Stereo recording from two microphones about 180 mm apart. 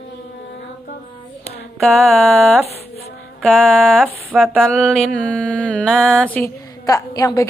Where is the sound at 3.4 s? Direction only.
5° left (ahead or behind).